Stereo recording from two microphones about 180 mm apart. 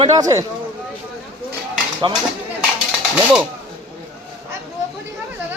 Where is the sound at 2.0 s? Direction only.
25° right (ahead or behind).